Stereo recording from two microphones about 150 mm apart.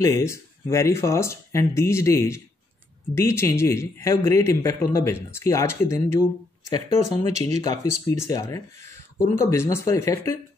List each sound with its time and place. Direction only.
0.0 s a man's voice: 20° left (ahead or behind)
6.7 s speech: 50° right (ahead or behind)
7.6 s a man's voice: 20° left (ahead or behind)